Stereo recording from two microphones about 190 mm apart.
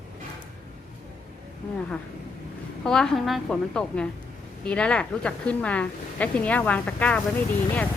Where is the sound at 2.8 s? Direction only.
5° left (ahead or behind).